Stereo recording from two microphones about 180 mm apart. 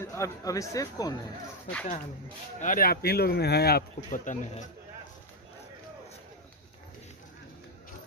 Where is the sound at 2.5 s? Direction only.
50° left (ahead or behind).